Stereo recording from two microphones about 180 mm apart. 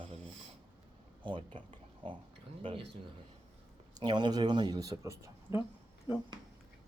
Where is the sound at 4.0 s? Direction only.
25° right (ahead or behind).